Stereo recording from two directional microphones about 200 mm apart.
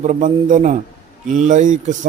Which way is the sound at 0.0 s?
40° right (ahead or behind).